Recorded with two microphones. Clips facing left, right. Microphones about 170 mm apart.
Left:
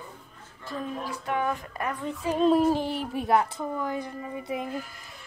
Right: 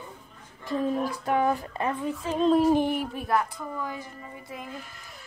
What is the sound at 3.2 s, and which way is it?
A woman's voice, 25° left (ahead or behind).